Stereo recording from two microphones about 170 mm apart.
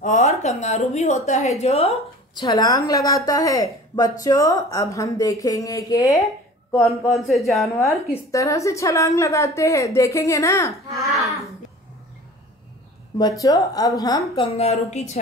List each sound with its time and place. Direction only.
0.0 s a woman's voice: 45° left (ahead or behind)
2.4 s a woman's voice: 20° left (ahead or behind)
7.1 s a woman's voice: centre (ahead or behind)
8.1 s a woman's voice: 20° left (ahead or behind)
10.9 s baby cry: centre (ahead or behind)
13.2 s a woman's voice: 20° left (ahead or behind); by 15.0 s 40° left (ahead or behind)